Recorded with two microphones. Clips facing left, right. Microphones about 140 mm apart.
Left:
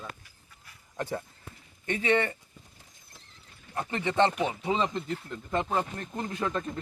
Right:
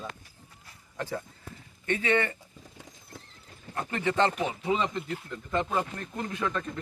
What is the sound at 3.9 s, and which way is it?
Speech, 20° left (ahead or behind).